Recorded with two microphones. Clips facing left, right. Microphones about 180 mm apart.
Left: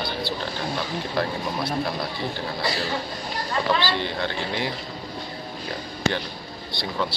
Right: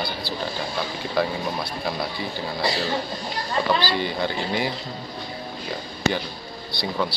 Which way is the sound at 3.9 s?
5° right (ahead or behind).